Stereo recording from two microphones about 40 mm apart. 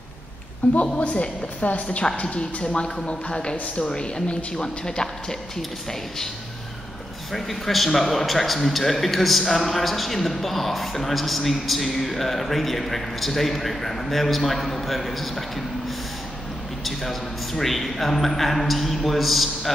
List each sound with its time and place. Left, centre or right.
0.6 s a woman's voice: left; by 6.2 s centre
7.3 s a man's voice: centre
16.8 s a man's voice: centre